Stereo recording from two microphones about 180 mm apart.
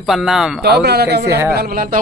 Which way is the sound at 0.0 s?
Centre (ahead or behind).